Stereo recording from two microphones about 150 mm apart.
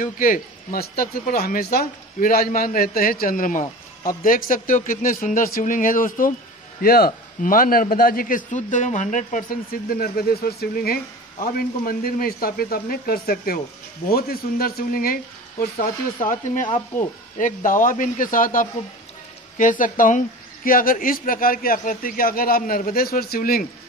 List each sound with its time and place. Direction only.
0.0 s a man's voice: 65° left (ahead or behind)
6.8 s speech: 85° left
7.4 s speech: 70° left (ahead or behind); by 11.0 s 90° left
11.4 s speech: 75° left (ahead or behind)
16.2 s a man's voice: 60° left (ahead or behind)
17.4 s a man's voice: 60° left (ahead or behind); by 23.7 s 80° left